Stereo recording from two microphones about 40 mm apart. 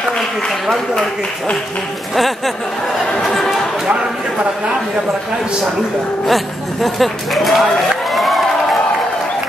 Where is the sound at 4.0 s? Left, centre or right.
Right.